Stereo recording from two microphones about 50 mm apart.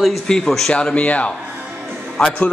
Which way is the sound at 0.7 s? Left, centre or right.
Left.